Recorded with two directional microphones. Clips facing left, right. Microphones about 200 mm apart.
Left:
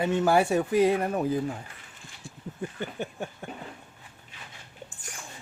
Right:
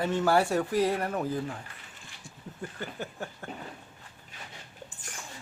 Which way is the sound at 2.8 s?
20° left (ahead or behind).